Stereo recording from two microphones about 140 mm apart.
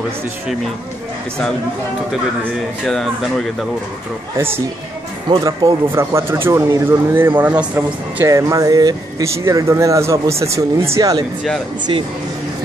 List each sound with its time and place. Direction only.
2.8 s speech: centre (ahead or behind)
5.3 s speech: 25° right (ahead or behind)
11.9 s speech: 40° right (ahead or behind)